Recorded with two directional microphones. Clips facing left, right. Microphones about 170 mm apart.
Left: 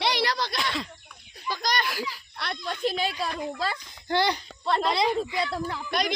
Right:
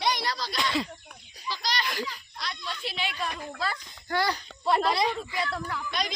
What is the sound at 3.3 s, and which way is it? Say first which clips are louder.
Speech: left 6 dB; 20° left (ahead or behind).